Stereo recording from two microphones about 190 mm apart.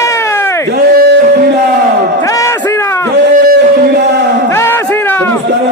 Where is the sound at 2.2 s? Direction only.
15° left (ahead or behind).